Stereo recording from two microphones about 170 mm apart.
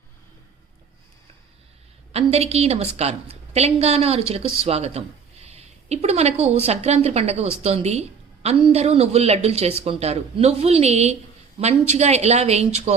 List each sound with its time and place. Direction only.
2.1 s a woman's voice: 35° right (ahead or behind)